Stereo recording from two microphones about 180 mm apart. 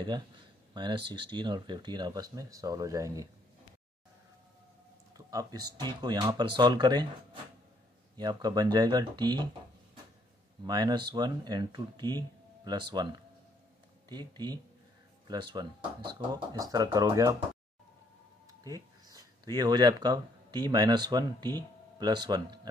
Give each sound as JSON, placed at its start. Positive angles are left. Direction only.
{"t": 0.7, "sound": "speech", "side_deg": -25}
{"t": 5.1, "sound": "speech", "side_deg": -20}
{"t": 8.2, "sound": "speech", "side_deg": -20}
{"t": 10.6, "sound": "speech", "side_deg": -25}
{"t": 18.5, "sound": "speech", "side_deg": -20}